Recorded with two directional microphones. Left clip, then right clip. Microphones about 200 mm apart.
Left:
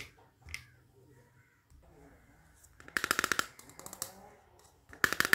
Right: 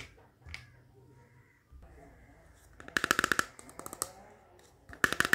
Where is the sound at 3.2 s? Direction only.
15° right (ahead or behind).